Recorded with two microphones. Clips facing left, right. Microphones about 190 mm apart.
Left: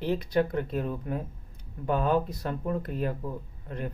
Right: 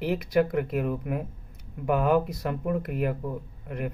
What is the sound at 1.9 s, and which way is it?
Speech, 25° left (ahead or behind).